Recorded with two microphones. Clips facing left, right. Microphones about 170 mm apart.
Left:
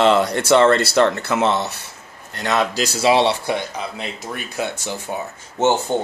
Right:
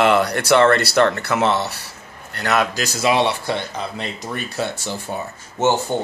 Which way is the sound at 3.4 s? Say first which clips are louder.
Left 1 dB; 10° left (ahead or behind).